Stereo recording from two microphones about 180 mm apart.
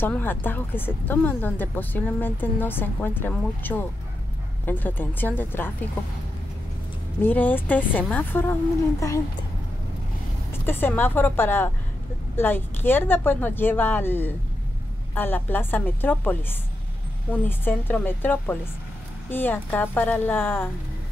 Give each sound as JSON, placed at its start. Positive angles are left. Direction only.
{"t": 0.0, "sound": "speech", "side_deg": 10}
{"t": 7.2, "sound": "speech", "side_deg": 10}
{"t": 10.6, "sound": "speech", "side_deg": 10}